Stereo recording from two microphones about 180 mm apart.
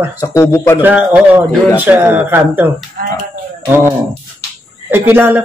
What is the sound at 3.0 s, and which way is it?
Speech, 55° right (ahead or behind).